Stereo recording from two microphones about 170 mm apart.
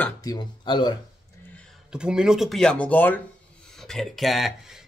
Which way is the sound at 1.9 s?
5° right (ahead or behind).